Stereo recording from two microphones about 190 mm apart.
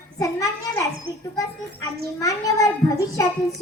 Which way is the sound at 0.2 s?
15° left (ahead or behind).